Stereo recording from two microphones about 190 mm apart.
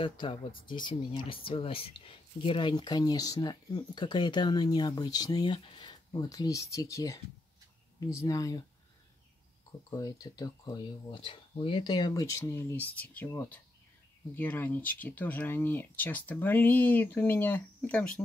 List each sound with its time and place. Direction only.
0.0 s speech: 25° left (ahead or behind)
9.7 s speech: 20° left (ahead or behind)